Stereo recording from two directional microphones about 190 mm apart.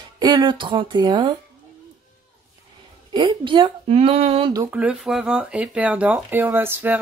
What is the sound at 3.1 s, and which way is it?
Speech, 25° right (ahead or behind).